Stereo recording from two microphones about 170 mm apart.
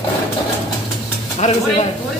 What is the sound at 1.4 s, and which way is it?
Speech, 40° left (ahead or behind).